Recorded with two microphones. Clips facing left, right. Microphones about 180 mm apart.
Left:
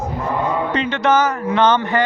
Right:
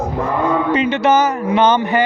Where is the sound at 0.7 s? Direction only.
10° right (ahead or behind).